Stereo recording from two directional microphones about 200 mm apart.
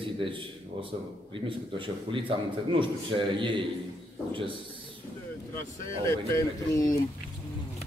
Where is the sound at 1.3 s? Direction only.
25° right (ahead or behind).